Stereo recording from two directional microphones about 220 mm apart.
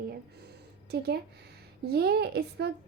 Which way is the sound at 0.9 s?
45° right (ahead or behind).